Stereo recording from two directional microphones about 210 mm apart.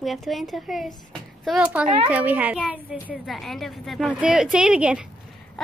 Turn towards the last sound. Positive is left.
turn(degrees=-5)  # may be behind; listen again after turning